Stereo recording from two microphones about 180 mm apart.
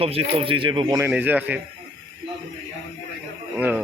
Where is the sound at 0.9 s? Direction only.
10° right (ahead or behind).